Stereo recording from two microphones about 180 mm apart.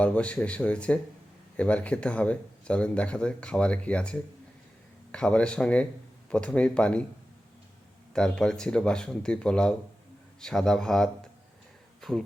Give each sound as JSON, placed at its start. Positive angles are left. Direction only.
{"t": 0.0, "sound": "speech", "side_deg": 5}
{"t": 8.1, "sound": "speech", "side_deg": 5}
{"t": 11.9, "sound": "a sound", "side_deg": 0}